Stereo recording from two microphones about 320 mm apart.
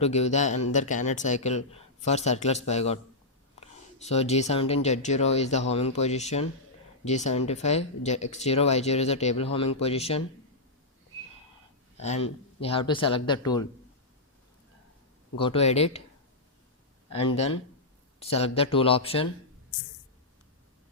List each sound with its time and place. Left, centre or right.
0.0 s speech: left
11.9 s speech: left
15.4 s speech: centre
17.1 s speech: centre